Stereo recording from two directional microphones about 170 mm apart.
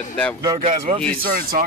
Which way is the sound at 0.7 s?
45° right (ahead or behind).